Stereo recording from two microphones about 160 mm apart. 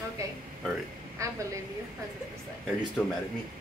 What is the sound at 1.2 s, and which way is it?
Speech, 20° right (ahead or behind).